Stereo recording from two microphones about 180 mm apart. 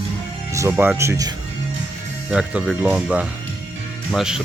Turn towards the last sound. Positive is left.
turn(degrees=-5)  # may be behind; listen again after turning